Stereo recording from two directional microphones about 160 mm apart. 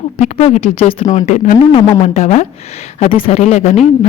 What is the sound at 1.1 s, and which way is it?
Speech, 50° left (ahead or behind).